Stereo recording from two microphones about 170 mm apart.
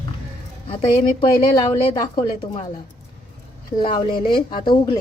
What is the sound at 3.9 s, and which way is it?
A woman's voice, 30° left (ahead or behind).